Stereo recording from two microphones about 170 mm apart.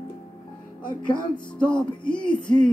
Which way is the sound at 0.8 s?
25° left (ahead or behind).